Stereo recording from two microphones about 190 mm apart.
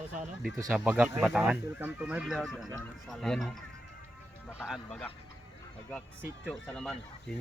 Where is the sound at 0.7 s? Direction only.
5° right (ahead or behind).